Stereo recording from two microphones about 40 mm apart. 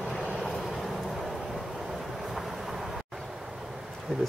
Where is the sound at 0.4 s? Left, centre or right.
Centre.